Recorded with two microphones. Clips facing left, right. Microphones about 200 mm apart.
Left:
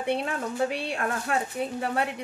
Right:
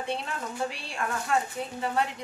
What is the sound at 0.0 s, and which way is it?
A woman's voice, 60° left (ahead or behind).